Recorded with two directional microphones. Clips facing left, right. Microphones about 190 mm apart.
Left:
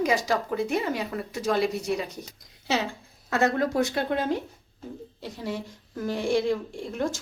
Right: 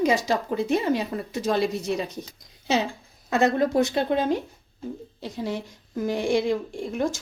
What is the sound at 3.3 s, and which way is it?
A woman's voice, 20° right (ahead or behind).